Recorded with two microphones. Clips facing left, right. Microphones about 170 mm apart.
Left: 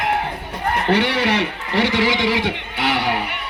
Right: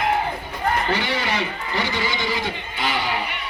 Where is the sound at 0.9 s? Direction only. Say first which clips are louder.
Left 6 dB; 70° left (ahead or behind).